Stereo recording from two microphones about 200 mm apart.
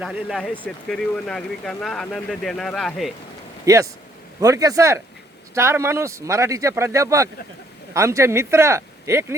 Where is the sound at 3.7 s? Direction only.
15° right (ahead or behind).